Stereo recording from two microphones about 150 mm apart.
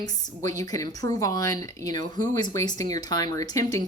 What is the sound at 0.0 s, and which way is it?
A woman's voice, 25° left (ahead or behind).